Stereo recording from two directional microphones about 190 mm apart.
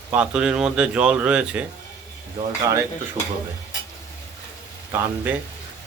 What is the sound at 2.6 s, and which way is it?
Speech, 15° right (ahead or behind).